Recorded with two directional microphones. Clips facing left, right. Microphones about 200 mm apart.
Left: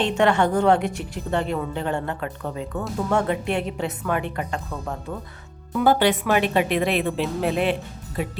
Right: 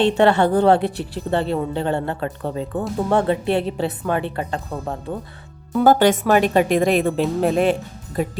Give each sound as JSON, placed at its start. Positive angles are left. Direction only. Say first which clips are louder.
{"t": 0.0, "sound": "a woman's voice", "louder": "right 4 dB", "side_deg": -35}
{"t": 5.8, "sound": "a woman's voice", "louder": "right 4 dB", "side_deg": -45}